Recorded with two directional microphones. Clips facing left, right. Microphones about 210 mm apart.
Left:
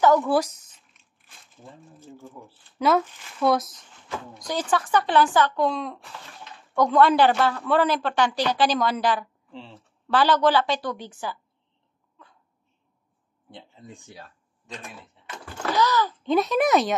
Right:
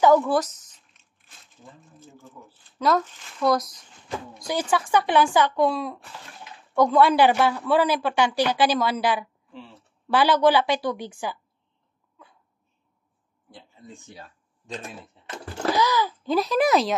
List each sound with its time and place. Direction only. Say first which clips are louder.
0.3 s speech: left 1 dB; 10° left (ahead or behind)
2.8 s speech: left 1 dB; 5° left (ahead or behind)
4.3 s speech: right 1 dB; 10° right (ahead or behind)
13.5 s speech: left 1 dB; 25° left (ahead or behind)
15.4 s a sound: right 5 dB; 35° right (ahead or behind)
15.7 s speech: left 1 dB; 10° right (ahead or behind)